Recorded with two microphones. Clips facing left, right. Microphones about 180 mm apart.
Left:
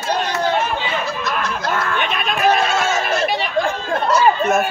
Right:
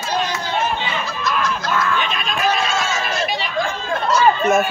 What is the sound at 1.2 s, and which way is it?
Music, 60° left (ahead or behind).